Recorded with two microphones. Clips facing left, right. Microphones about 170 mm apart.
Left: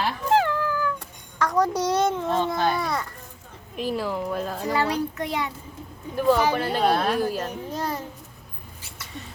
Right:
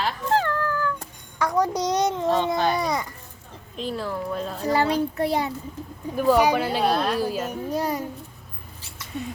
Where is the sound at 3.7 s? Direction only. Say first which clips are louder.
Left 2 dB; 10° left (ahead or behind).